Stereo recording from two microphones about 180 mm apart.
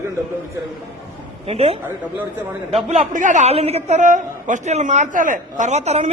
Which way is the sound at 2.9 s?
45° right (ahead or behind).